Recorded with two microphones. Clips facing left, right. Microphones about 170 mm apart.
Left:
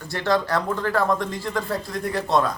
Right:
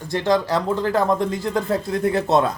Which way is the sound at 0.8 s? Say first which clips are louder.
Right 4 dB; 30° right (ahead or behind).